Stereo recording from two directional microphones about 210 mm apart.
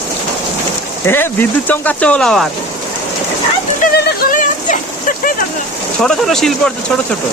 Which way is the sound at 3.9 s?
45° left (ahead or behind).